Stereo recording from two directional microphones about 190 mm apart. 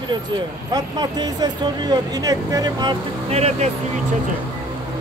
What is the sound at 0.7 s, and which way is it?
Speech, 20° right (ahead or behind).